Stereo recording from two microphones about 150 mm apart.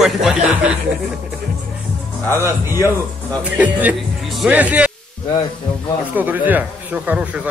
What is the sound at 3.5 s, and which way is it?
A man's voice, 10° right (ahead or behind).